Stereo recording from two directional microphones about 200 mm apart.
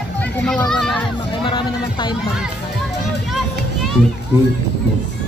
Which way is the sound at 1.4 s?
25° left (ahead or behind).